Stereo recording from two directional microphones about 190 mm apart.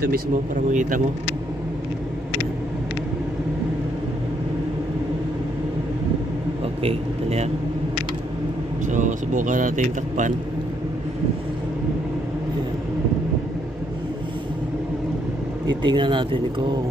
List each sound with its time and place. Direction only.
0.7 s speech: 40° right (ahead or behind)
6.8 s speech: 30° right (ahead or behind)
8.8 s speech: 40° right (ahead or behind)
15.8 s speech: 25° right (ahead or behind)